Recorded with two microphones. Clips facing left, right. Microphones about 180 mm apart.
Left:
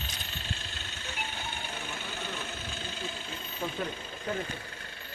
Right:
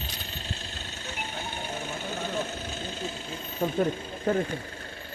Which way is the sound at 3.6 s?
45° right (ahead or behind).